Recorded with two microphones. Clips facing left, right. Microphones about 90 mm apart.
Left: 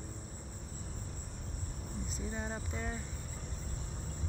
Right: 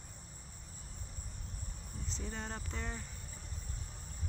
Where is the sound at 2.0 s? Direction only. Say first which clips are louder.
Left 2 dB; 10° left (ahead or behind).